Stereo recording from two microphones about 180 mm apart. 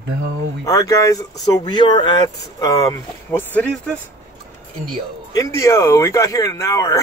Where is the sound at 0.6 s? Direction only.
20° left (ahead or behind).